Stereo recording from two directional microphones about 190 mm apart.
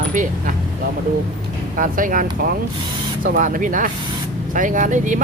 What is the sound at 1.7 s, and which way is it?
Speech, 45° right (ahead or behind).